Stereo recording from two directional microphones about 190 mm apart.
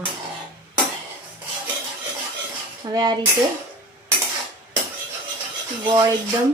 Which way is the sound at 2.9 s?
20° right (ahead or behind).